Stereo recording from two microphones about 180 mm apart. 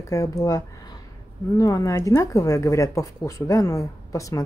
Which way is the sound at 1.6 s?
20° left (ahead or behind).